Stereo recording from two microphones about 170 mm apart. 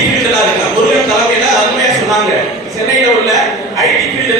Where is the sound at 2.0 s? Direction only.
Centre (ahead or behind).